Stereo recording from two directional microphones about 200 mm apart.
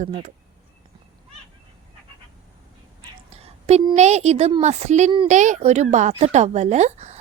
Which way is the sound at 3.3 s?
30° right (ahead or behind).